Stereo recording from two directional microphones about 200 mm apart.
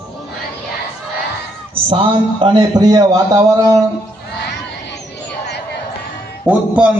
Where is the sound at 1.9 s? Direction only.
25° right (ahead or behind).